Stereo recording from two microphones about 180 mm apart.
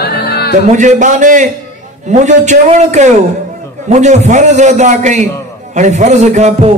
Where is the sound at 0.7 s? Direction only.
45° right (ahead or behind).